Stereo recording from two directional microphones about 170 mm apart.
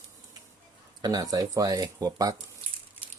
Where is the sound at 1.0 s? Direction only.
20° right (ahead or behind).